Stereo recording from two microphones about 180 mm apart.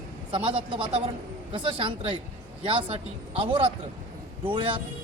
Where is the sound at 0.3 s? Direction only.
30° right (ahead or behind).